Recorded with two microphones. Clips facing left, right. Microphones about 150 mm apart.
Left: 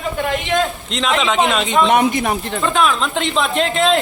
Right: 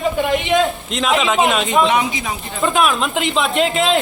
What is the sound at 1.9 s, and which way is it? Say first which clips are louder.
Speech: left 4 dB; 55° left (ahead or behind).